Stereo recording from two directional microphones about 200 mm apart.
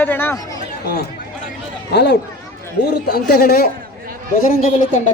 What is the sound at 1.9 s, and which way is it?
Speech, 55° left (ahead or behind).